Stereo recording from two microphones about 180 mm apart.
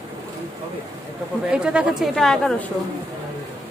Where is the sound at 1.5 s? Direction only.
5° right (ahead or behind).